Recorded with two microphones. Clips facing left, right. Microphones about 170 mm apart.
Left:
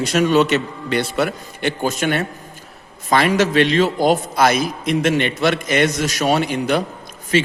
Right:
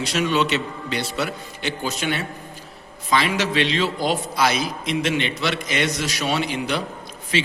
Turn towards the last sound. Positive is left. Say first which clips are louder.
# left 6 dB
turn(degrees=50)  # may be behind; listen again after turning